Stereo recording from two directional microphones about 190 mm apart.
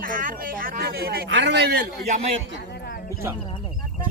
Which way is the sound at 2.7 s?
55° left (ahead or behind).